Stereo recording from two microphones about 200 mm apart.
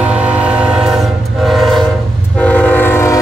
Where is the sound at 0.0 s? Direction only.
5° right (ahead or behind).